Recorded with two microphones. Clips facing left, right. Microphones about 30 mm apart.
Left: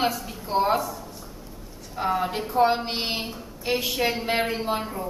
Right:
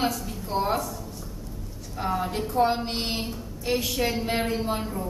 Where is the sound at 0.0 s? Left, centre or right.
Centre.